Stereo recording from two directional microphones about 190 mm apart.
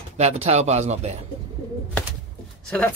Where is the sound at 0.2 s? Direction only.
35° right (ahead or behind).